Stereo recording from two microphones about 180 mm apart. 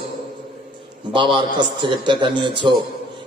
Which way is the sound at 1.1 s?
25° right (ahead or behind).